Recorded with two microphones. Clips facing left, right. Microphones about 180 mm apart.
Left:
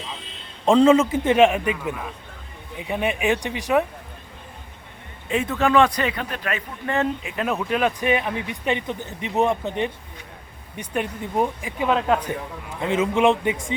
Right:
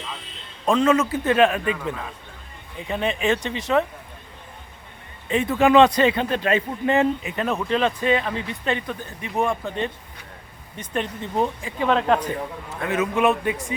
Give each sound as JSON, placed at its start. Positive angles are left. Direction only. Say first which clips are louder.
{"t": 0.6, "sound": "a man's voice", "louder": "left 4 dB", "side_deg": 25}
{"t": 5.3, "sound": "speech", "louder": "right 1 dB", "side_deg": 0}
{"t": 5.5, "sound": "speech", "louder": "right 4 dB", "side_deg": -20}
{"t": 7.2, "sound": "speech", "louder": "even", "side_deg": 0}
{"t": 12.8, "sound": "a man's voice", "louder": "left 2 dB", "side_deg": 25}